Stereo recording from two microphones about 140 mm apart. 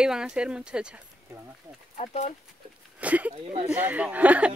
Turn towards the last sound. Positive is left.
turn(degrees=-10)  # may be behind; listen again after turning